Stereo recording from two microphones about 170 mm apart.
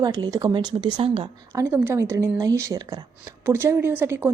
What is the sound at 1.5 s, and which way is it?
Speech, 15° right (ahead or behind).